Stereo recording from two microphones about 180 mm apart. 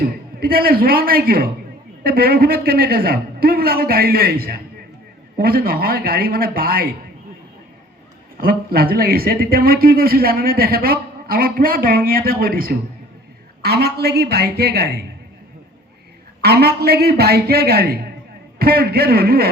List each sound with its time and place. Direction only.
0.0 s speech: 55° right (ahead or behind)
8.4 s speech: 55° right (ahead or behind)
16.4 s speech: 60° right (ahead or behind)